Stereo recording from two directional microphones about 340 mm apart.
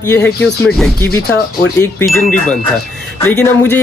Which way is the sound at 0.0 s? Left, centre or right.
Centre.